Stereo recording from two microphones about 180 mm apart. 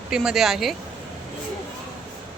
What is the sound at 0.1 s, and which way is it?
Speech, 5° right (ahead or behind).